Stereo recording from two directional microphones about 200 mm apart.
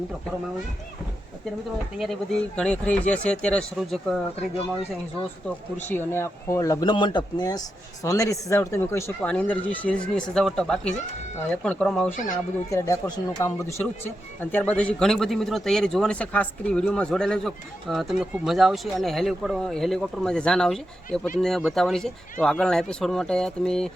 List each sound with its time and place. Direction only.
2.6 s speech: 5° left (ahead or behind)
5.7 s speech: 10° left (ahead or behind)
12.7 s speech: 15° left (ahead or behind)